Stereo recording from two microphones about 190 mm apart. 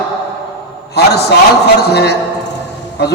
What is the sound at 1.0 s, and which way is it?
A man's voice, 60° left (ahead or behind).